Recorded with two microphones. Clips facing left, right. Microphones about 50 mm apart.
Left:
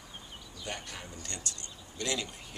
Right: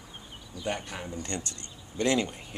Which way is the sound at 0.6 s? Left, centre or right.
Centre.